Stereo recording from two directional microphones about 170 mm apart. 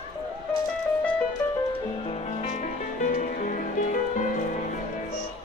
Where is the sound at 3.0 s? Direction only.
50° left (ahead or behind).